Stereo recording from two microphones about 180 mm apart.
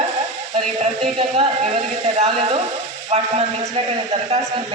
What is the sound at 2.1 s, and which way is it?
A man's voice, 35° right (ahead or behind).